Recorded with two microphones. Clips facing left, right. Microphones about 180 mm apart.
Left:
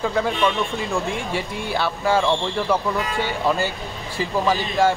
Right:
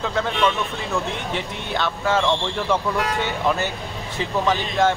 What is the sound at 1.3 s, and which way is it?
Speech, 10° left (ahead or behind).